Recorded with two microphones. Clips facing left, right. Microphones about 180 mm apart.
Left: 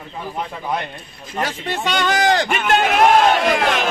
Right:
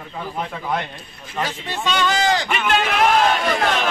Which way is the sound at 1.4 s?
55° left (ahead or behind).